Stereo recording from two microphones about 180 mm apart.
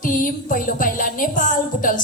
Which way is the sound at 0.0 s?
50° left (ahead or behind).